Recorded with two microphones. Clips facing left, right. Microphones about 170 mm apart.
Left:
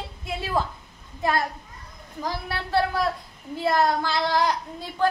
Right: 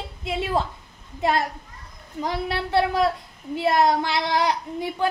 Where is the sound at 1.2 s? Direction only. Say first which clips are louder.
Right 2 dB; 25° right (ahead or behind).